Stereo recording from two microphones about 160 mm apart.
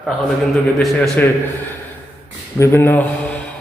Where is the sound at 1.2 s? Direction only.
10° left (ahead or behind).